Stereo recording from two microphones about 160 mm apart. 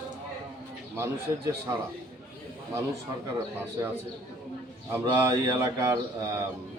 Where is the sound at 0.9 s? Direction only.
20° right (ahead or behind).